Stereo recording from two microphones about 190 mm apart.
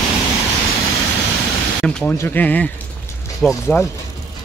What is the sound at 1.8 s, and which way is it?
Speech, 5° left (ahead or behind).